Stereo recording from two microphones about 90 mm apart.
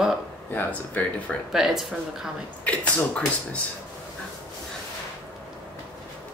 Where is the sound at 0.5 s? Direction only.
20° left (ahead or behind).